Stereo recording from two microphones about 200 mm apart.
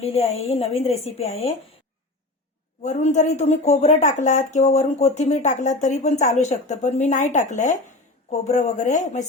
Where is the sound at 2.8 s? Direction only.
35° left (ahead or behind).